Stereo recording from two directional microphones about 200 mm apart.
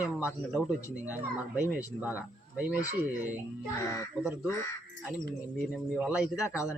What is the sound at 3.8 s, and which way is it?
Speech, 15° left (ahead or behind).